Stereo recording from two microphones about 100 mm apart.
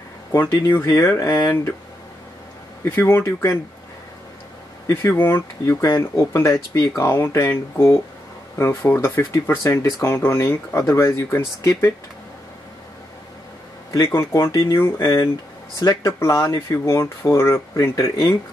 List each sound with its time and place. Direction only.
0.8 s speech: 25° left (ahead or behind)
2.8 s speech: 20° left (ahead or behind)
4.8 s speech: 20° left (ahead or behind)
13.9 s speech: 35° left (ahead or behind)